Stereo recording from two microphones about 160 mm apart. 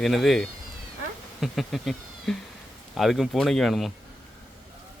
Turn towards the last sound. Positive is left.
turn(degrees=0)  # may be behind; listen again after turning